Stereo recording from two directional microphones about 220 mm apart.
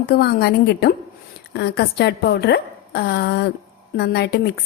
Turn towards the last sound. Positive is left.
turn(degrees=45)  # may be behind; listen again after turning